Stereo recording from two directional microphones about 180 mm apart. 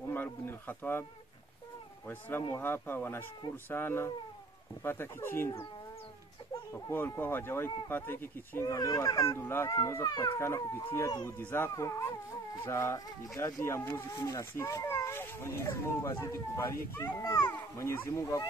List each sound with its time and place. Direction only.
0.1 s speech: 10° left (ahead or behind)
2.0 s speech: 10° left (ahead or behind)